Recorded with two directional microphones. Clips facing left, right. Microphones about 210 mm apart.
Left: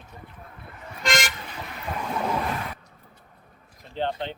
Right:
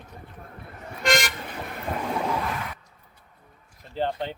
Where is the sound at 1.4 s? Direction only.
55° right (ahead or behind).